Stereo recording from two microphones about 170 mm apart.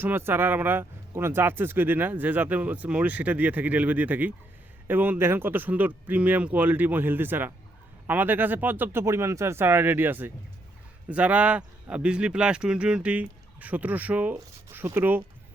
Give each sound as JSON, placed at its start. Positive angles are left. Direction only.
{"t": 0.0, "sound": "speech", "side_deg": -10}